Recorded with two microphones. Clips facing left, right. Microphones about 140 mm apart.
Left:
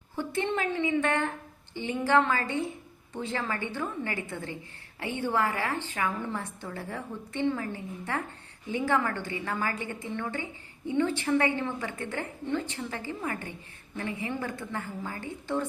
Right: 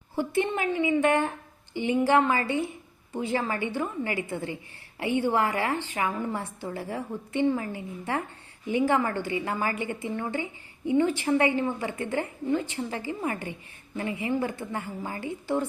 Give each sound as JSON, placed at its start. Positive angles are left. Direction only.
{"t": 0.2, "sound": "a woman's voice", "side_deg": -10}